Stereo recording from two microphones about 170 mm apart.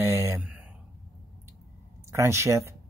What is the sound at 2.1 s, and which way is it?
Speech, 15° right (ahead or behind).